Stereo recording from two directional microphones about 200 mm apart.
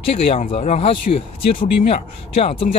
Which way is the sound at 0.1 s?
30° left (ahead or behind).